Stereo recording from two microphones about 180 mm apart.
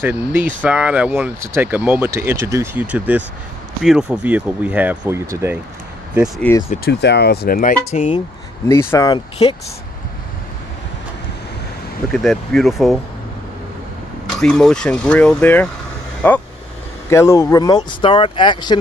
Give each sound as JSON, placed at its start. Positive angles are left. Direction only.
{"t": 0.0, "sound": "speech", "side_deg": -10}
{"t": 6.1, "sound": "speech", "side_deg": -5}
{"t": 6.9, "sound": "speech", "side_deg": 70}
{"t": 7.9, "sound": "speech", "side_deg": 35}
{"t": 8.6, "sound": "speech", "side_deg": 15}
{"t": 9.1, "sound": "speech", "side_deg": 30}
{"t": 12.1, "sound": "speech", "side_deg": 0}
{"t": 14.4, "sound": "speech", "side_deg": 5}